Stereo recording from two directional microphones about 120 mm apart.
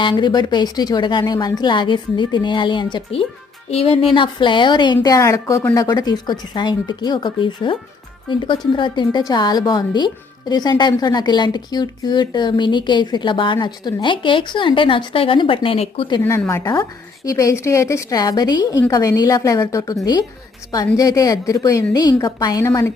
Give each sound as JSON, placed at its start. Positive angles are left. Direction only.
{"t": 0.0, "sound": "speech", "side_deg": 40}
{"t": 5.0, "sound": "a woman's voice", "side_deg": 25}
{"t": 17.2, "sound": "a woman's voice", "side_deg": 30}